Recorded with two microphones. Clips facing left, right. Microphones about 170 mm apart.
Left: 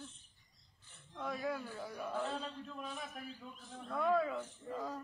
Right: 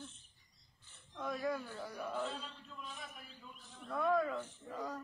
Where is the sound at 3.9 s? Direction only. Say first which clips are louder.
Even; 5° left (ahead or behind).